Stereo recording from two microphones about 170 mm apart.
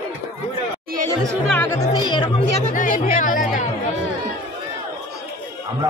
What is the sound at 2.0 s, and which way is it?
Music, 25° left (ahead or behind).